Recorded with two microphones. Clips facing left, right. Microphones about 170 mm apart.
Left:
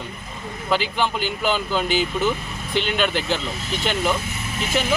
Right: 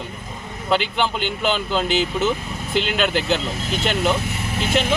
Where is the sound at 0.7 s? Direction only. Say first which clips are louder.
Right 1 dB; centre (ahead or behind).